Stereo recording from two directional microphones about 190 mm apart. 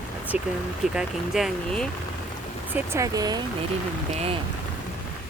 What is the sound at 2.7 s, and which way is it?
Speech, 15° right (ahead or behind).